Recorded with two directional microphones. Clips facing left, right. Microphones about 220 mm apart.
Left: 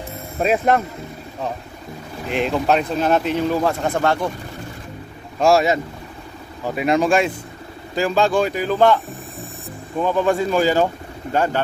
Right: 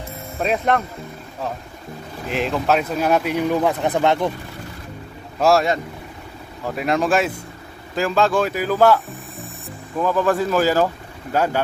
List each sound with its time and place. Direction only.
0.4 s speech: 5° left (ahead or behind)
2.2 s speech: centre (ahead or behind); by 4.3 s 20° right (ahead or behind)
5.4 s speech: centre (ahead or behind)